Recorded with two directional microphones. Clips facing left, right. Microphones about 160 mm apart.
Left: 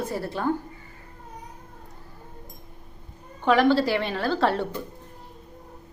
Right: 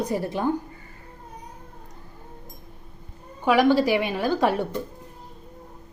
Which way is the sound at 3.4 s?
10° right (ahead or behind).